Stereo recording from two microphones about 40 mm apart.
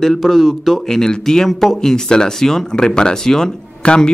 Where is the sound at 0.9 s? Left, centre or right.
Centre.